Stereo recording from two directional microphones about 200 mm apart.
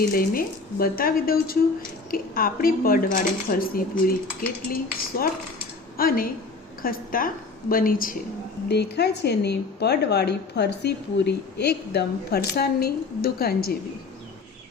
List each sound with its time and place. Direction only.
0.0 s speech: 45° left (ahead or behind)
8.7 s a woman's voice: 55° left (ahead or behind)